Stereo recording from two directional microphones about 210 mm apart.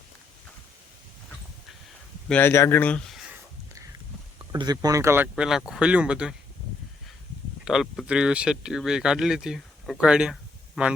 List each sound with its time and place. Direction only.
2.3 s speech: 10° left (ahead or behind)
4.5 s speech: 20° right (ahead or behind)
7.6 s speech: centre (ahead or behind)